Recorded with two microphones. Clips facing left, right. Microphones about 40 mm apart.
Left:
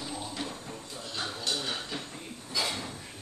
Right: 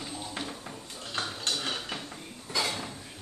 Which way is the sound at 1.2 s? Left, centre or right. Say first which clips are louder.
Right 2 dB; right.